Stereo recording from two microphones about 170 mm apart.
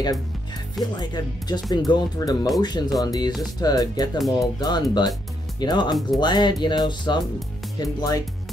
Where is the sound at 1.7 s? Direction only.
25° left (ahead or behind).